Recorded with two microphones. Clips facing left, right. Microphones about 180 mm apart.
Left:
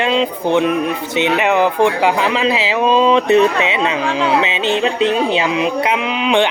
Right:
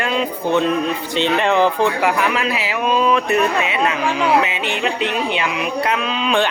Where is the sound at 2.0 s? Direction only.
25° left (ahead or behind).